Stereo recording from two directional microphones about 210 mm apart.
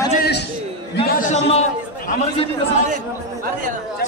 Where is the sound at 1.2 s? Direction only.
30° left (ahead or behind).